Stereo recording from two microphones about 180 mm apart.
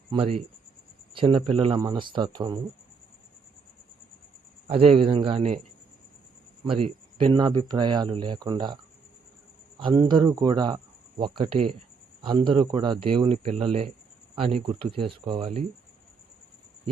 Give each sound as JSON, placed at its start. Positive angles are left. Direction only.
{"t": 0.1, "sound": "speech", "side_deg": -35}
{"t": 4.7, "sound": "speech", "side_deg": -30}
{"t": 6.7, "sound": "speech", "side_deg": -30}